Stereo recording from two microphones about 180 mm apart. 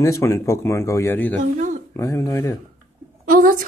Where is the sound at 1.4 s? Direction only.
40° right (ahead or behind).